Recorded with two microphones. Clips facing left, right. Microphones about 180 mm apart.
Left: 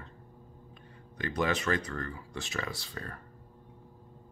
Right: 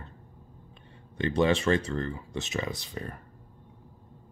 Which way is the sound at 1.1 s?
25° right (ahead or behind).